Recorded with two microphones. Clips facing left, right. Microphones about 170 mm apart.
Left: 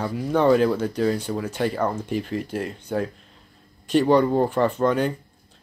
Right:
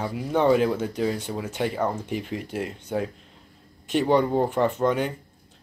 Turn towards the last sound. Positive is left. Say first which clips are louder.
# left 2 dB
turn(degrees=-20)  # may be behind; listen again after turning